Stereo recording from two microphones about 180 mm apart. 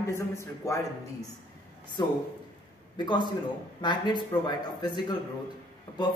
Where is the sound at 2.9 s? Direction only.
25° left (ahead or behind).